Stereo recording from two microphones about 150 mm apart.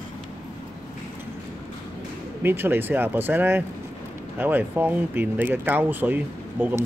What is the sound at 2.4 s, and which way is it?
Speech, 15° right (ahead or behind).